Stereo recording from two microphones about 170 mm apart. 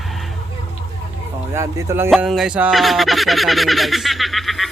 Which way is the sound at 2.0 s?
Centre (ahead or behind).